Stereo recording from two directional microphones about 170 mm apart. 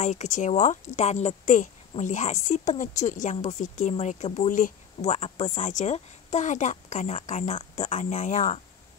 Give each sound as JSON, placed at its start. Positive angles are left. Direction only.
{"t": 0.0, "sound": "speech", "side_deg": 45}